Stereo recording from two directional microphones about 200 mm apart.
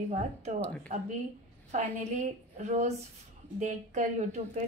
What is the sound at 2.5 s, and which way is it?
A woman's voice, 35° right (ahead or behind).